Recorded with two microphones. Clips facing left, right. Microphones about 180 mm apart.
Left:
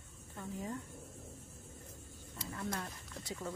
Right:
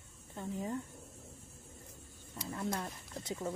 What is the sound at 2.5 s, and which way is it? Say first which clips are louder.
Speech: right 3 dB; 25° right (ahead or behind).